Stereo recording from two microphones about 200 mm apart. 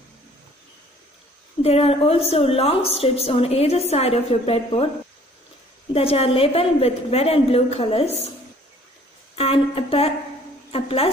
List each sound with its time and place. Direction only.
1.6 s a woman's voice: 30° left (ahead or behind)
5.9 s a woman's voice: 30° left (ahead or behind)
9.3 s a woman's voice: 30° left (ahead or behind)